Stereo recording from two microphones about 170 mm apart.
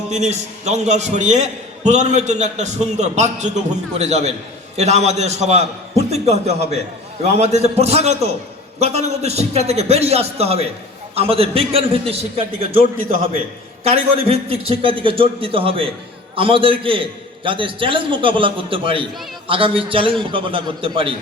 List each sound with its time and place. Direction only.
0.1 s a man's voice: 40° right (ahead or behind)
13.8 s a man's voice: 35° right (ahead or behind)